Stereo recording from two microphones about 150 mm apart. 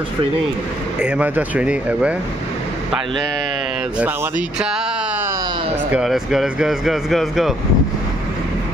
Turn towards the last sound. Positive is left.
turn(degrees=0)  # may be behind; listen again after turning